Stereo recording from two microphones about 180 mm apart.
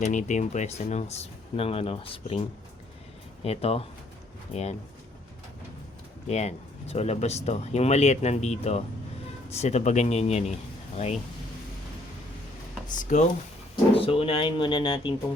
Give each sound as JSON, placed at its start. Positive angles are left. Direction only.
{"t": 0.0, "sound": "speech", "side_deg": 40}
{"t": 3.4, "sound": "speech", "side_deg": 35}
{"t": 6.2, "sound": "speech", "side_deg": 35}
{"t": 12.9, "sound": "speech", "side_deg": 45}
{"t": 13.9, "sound": "speech", "side_deg": 30}